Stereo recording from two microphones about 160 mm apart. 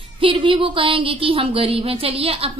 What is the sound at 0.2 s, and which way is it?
A woman's voice, 35° right (ahead or behind).